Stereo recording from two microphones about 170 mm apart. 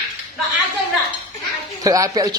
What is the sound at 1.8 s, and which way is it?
Speech, 20° right (ahead or behind).